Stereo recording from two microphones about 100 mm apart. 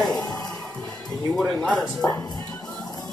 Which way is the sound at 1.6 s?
5° left (ahead or behind).